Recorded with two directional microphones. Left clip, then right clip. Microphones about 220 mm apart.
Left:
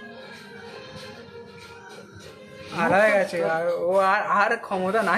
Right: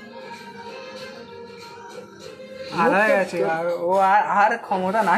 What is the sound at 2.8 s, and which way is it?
Speech, 5° left (ahead or behind).